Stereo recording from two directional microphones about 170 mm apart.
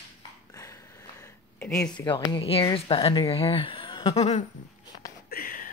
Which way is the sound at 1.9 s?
25° left (ahead or behind).